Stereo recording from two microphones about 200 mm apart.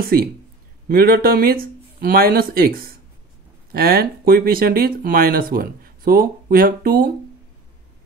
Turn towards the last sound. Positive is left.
turn(degrees=-45)  # may be behind; listen again after turning